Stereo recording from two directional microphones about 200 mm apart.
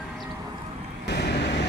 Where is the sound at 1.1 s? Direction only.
55° left (ahead or behind).